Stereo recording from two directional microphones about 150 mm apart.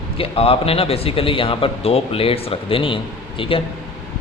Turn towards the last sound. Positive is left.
turn(degrees=35)  # may be behind; listen again after turning